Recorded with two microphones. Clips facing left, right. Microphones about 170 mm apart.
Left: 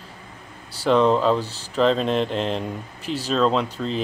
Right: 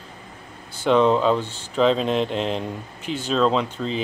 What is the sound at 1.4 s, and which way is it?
Speech, 35° left (ahead or behind).